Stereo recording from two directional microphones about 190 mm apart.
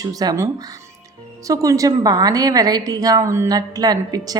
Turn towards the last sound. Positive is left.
turn(degrees=-20)  # may be behind; listen again after turning